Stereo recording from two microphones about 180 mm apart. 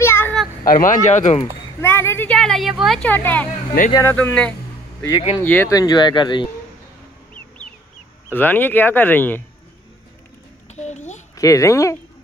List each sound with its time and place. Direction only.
0.0 s children playing: 10° left (ahead or behind)
0.7 s speech: 50° left (ahead or behind)
1.8 s a woman's voice: 15° left (ahead or behind)
8.3 s a woman's voice: 10° left (ahead or behind)
10.7 s a sound: 40° left (ahead or behind)
11.3 s a woman's voice: 20° left (ahead or behind)